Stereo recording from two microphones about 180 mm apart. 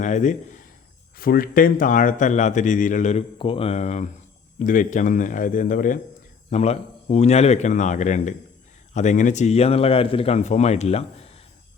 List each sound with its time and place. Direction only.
0.0 s speech: 45° left (ahead or behind)
1.1 s a man's voice: 55° left (ahead or behind); by 11.3 s 35° left (ahead or behind)